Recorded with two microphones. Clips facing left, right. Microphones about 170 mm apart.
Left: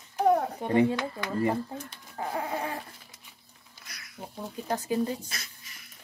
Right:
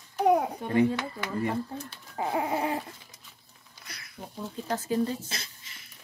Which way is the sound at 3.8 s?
30° right (ahead or behind).